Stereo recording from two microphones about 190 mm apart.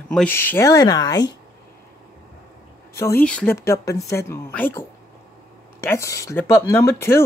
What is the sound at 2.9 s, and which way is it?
Speech, 15° left (ahead or behind).